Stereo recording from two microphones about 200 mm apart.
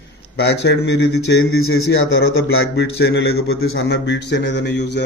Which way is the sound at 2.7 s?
55° left (ahead or behind).